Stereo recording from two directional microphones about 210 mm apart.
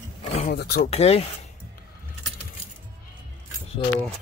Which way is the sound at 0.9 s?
30° left (ahead or behind).